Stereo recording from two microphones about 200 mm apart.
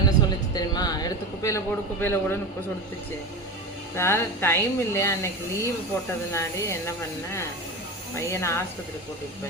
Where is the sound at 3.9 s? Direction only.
15° left (ahead or behind).